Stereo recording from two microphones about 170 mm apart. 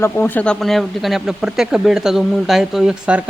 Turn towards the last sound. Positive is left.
turn(degrees=-5)  # may be behind; listen again after turning